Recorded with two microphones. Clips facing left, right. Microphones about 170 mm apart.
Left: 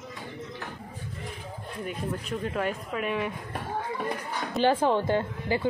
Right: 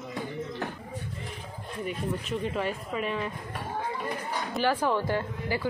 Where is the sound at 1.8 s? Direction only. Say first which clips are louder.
Right 1 dB; centre (ahead or behind).